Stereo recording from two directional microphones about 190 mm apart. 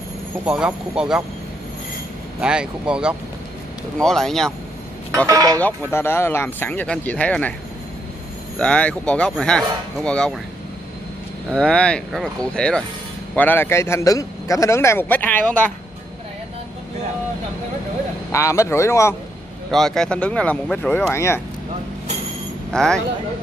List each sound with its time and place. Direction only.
0.5 s speech: 5° right (ahead or behind)
2.4 s speech: 5° right (ahead or behind)
5.1 s speech: 15° right (ahead or behind)
5.6 s a man's voice: 10° left (ahead or behind)
8.5 s speech: 5° left (ahead or behind)
11.5 s a man's voice: 5° left (ahead or behind)
18.3 s a man's voice: 15° left (ahead or behind)
19.7 s a man's voice: centre (ahead or behind)
22.7 s speech: 5° left (ahead or behind)